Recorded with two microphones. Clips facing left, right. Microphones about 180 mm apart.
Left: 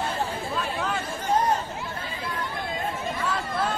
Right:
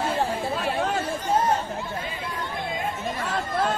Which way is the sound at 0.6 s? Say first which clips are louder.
Right 1 dB; 55° right (ahead or behind).